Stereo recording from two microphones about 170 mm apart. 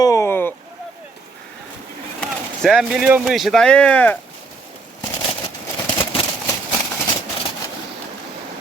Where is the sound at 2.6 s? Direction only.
Centre (ahead or behind).